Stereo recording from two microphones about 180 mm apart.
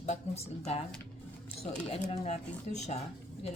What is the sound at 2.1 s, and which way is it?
Speech, 35° left (ahead or behind).